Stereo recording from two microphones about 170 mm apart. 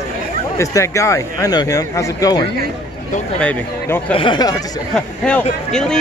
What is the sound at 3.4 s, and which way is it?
Speech, 10° left (ahead or behind).